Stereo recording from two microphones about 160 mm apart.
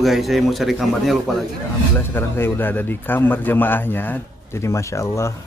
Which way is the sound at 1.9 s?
15° left (ahead or behind).